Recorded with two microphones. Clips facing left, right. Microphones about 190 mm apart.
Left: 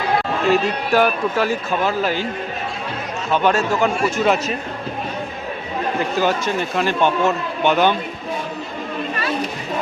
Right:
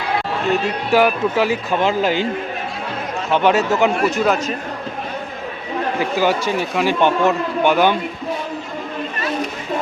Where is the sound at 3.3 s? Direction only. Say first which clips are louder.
Right 2 dB; 20° right (ahead or behind).